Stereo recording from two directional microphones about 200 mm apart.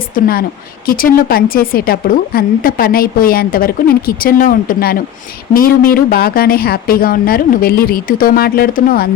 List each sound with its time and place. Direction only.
0.1 s a woman's voice: 50° left (ahead or behind)